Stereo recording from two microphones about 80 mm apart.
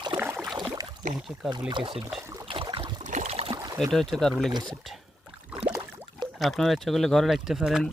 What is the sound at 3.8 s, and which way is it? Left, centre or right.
Speech, centre.